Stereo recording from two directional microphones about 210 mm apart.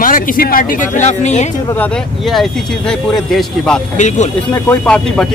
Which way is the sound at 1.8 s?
Centre (ahead or behind).